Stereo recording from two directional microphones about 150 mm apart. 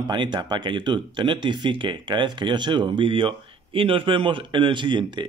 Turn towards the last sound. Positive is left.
turn(degrees=-30)  # may be behind; listen again after turning